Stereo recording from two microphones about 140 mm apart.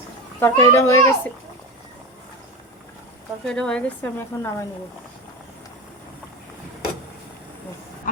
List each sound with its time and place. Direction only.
0.3 s a child's voice: 20° left (ahead or behind)
3.5 s speech: 5° left (ahead or behind)
8.1 s hiss: 75° left (ahead or behind)